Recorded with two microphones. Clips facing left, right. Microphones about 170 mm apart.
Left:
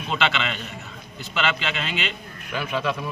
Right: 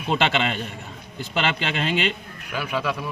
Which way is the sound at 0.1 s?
45° right (ahead or behind).